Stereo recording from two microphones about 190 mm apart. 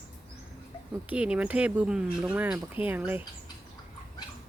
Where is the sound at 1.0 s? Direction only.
5° right (ahead or behind).